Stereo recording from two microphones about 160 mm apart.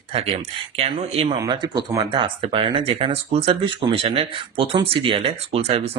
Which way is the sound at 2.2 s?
35° right (ahead or behind).